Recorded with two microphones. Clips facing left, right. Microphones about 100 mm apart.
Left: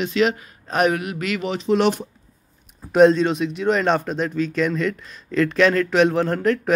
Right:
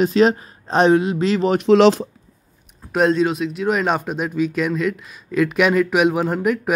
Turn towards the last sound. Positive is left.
turn(degrees=-10)  # may be behind; listen again after turning